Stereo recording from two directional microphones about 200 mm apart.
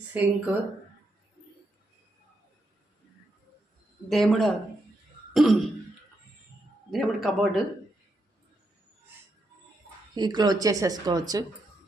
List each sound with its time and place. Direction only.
0.1 s speech: 5° right (ahead or behind)
4.1 s a man's voice: centre (ahead or behind)
5.3 s throat clearing: centre (ahead or behind)
6.9 s a man's voice: centre (ahead or behind)
10.2 s speech: 20° right (ahead or behind)